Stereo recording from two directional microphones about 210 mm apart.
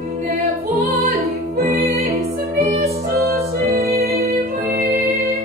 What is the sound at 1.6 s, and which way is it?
Music, 45° right (ahead or behind).